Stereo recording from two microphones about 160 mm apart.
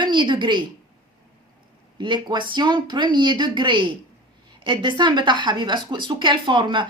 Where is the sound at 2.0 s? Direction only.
30° right (ahead or behind).